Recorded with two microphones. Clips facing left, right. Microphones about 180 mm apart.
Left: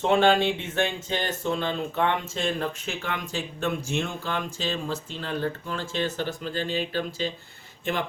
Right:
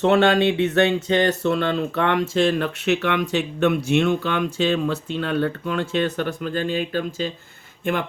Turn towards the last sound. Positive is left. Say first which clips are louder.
# right 5 dB
turn(degrees=-50)  # may be behind; listen again after turning